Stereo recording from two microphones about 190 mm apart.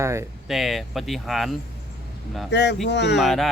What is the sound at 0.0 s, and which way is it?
Speech, 15° right (ahead or behind).